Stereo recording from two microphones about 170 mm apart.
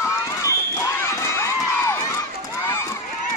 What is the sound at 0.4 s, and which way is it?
Crowd, 15° left (ahead or behind).